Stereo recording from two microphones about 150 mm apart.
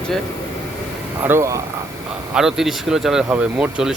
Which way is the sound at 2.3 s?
5° right (ahead or behind).